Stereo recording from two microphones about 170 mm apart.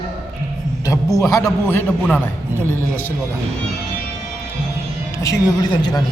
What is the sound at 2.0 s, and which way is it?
Speech, 5° left (ahead or behind).